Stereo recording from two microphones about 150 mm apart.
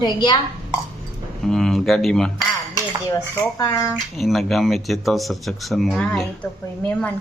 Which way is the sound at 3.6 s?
20° left (ahead or behind).